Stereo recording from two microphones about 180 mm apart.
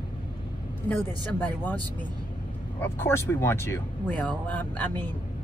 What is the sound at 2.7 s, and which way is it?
Speech, 10° left (ahead or behind).